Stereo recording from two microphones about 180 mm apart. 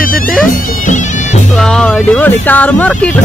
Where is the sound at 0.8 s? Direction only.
40° left (ahead or behind).